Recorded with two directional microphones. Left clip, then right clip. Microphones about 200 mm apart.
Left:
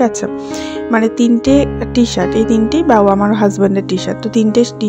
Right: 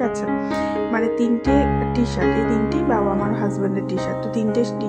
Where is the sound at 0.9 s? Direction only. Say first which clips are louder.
Left 10 dB; 40° left (ahead or behind).